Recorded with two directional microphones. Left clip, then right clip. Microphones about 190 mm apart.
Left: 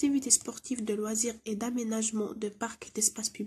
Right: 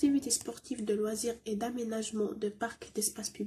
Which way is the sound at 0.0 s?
45° left (ahead or behind).